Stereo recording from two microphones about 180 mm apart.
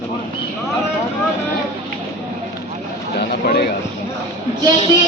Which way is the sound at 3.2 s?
65° left (ahead or behind).